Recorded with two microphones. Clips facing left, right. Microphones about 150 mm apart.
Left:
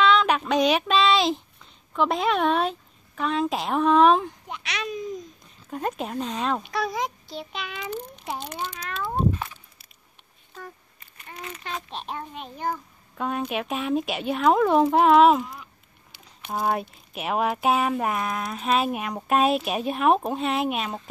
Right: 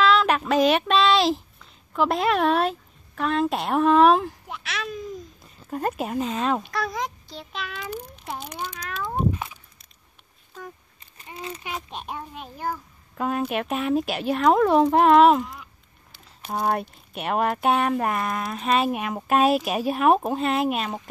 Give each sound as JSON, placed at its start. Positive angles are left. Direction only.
{"t": 0.0, "sound": "a sound", "side_deg": 0}
{"t": 2.0, "sound": "a child's voice", "side_deg": 0}
{"t": 9.1, "sound": "cat", "side_deg": -10}
{"t": 11.3, "sound": "a child's voice", "side_deg": -25}
{"t": 11.6, "sound": "a child's voice", "side_deg": -10}